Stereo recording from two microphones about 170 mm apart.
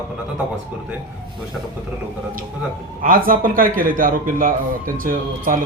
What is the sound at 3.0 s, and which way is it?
A man's voice, 55° right (ahead or behind).